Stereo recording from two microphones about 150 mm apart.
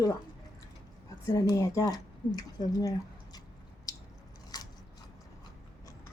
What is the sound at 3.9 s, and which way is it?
Biting, 25° left (ahead or behind).